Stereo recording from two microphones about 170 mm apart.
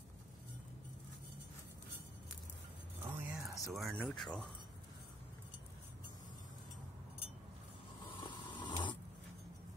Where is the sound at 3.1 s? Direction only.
15° right (ahead or behind).